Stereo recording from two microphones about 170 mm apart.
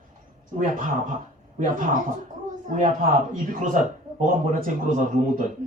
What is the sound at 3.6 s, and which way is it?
Speech, 50° right (ahead or behind).